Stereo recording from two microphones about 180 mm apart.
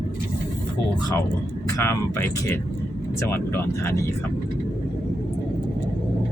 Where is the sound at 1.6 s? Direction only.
15° left (ahead or behind).